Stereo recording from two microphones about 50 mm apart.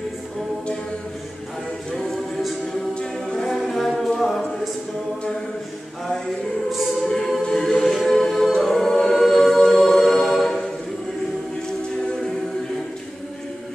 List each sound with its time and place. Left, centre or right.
1.9 s music: centre
2.9 s a capella: centre
3.3 s music: centre
6.7 s choir: centre
7.2 s music: centre
7.4 s a sound: centre
8.6 s choir: centre